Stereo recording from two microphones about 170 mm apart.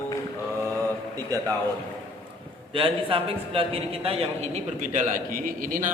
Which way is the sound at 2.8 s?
35° right (ahead or behind).